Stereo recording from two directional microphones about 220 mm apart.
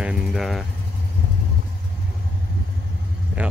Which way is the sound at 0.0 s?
Centre (ahead or behind).